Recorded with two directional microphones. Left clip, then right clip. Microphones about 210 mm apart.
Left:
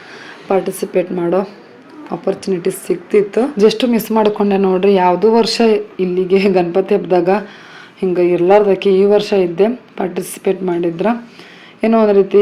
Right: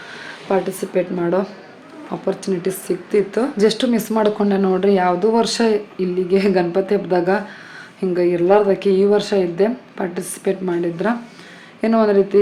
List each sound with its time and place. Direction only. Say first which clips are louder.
0.4 s speech: left 4 dB; 20° left (ahead or behind)